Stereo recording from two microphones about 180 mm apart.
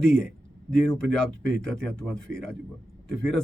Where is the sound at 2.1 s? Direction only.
90° right.